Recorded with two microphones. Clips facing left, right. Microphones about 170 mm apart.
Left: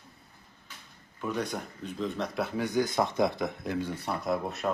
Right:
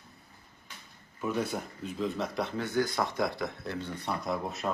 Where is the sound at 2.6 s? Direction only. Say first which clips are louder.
Left 3 dB; 15° left (ahead or behind).